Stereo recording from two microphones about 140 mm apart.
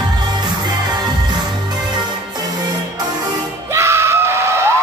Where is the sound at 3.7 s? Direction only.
20° right (ahead or behind).